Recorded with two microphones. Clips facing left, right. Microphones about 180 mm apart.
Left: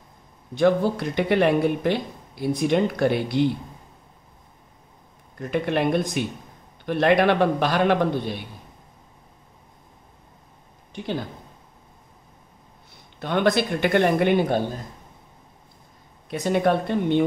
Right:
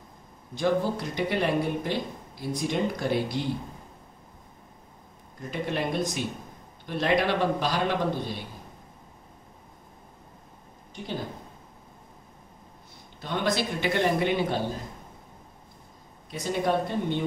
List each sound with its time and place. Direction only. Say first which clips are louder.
0.6 s speech: left 6 dB; 60° left (ahead or behind)
5.5 s speech: left 7 dB; 60° left (ahead or behind)
13.2 s speech: left 6 dB; 65° left (ahead or behind)
16.3 s a woman's voice: left 6 dB; 65° left (ahead or behind)